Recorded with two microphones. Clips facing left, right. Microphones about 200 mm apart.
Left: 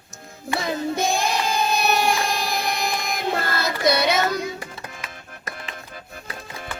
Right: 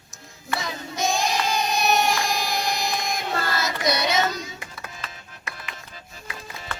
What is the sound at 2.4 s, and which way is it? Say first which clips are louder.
Child singing: left 1 dB; 60° left (ahead or behind).